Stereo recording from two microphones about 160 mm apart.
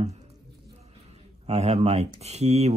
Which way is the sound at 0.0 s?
40° right (ahead or behind).